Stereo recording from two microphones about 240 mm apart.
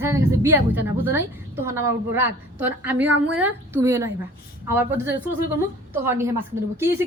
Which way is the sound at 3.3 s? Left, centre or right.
Centre.